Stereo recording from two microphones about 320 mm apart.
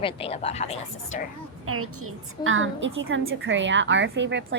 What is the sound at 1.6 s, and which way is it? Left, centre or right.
A woman's voice, right.